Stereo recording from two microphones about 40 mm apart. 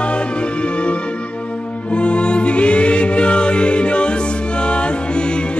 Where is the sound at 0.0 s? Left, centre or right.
Left.